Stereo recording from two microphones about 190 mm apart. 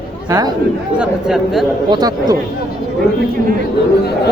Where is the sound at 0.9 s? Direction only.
Centre (ahead or behind).